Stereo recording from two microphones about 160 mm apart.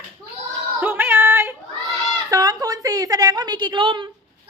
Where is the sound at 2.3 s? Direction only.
25° right (ahead or behind).